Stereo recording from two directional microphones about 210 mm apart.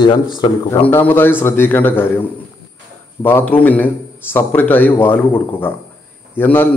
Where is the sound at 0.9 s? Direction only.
10° left (ahead or behind).